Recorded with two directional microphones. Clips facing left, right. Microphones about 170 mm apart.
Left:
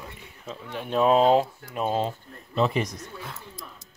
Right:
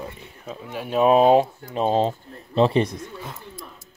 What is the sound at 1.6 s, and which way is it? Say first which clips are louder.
Speech: right 5 dB; 30° right (ahead or behind).